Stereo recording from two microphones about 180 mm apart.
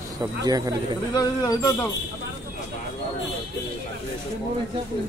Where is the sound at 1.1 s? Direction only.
20° left (ahead or behind).